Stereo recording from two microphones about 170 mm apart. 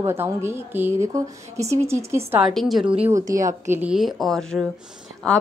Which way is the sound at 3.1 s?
20° right (ahead or behind).